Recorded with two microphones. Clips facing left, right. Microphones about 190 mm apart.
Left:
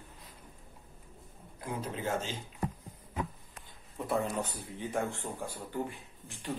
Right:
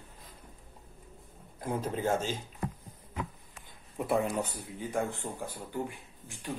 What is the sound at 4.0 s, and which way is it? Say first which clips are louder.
Speech: right 3 dB; 10° right (ahead or behind).